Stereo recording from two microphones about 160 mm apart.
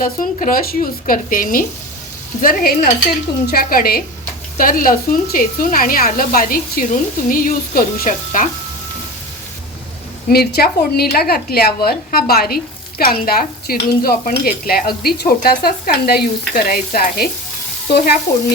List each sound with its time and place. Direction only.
0.0 s speech: 60° left (ahead or behind)
3.4 s stir: 65° left (ahead or behind)
4.5 s speech: 60° left (ahead or behind)
10.2 s stir: 75° left (ahead or behind)
17.9 s stir: 80° left